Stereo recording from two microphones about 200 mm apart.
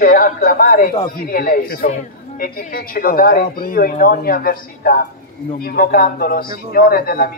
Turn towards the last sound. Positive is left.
turn(degrees=50)  # may be behind; listen again after turning